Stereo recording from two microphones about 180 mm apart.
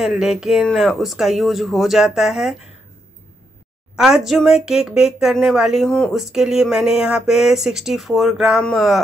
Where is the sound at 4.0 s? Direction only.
5° right (ahead or behind).